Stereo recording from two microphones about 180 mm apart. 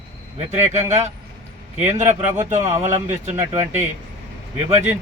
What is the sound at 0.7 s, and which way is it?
Speech, 40° right (ahead or behind).